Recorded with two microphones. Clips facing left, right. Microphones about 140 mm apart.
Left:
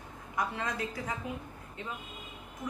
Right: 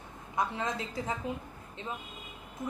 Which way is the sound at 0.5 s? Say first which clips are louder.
Right 2 dB; 25° right (ahead or behind).